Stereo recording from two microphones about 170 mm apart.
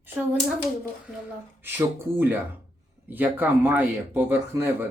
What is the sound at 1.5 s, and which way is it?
Speech, 10° right (ahead or behind).